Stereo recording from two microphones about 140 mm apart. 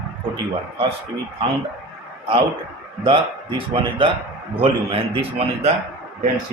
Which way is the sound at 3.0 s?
40° right (ahead or behind).